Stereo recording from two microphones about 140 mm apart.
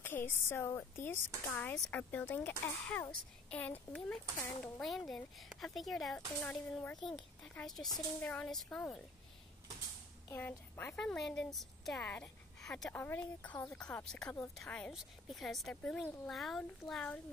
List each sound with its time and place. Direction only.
0.0 s speech: 15° left (ahead or behind)
10.2 s speech: 15° left (ahead or behind)
12.9 s speech: 15° left (ahead or behind)